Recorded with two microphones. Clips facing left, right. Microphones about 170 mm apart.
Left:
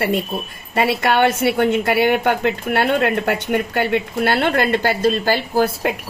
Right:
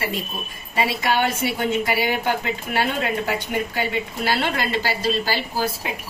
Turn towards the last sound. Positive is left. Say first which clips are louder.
# left 7 dB
turn(degrees=55)  # may be behind; listen again after turning